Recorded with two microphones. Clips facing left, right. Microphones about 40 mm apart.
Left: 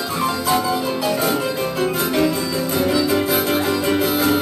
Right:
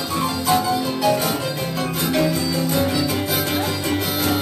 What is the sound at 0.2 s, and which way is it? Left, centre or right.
Music, left.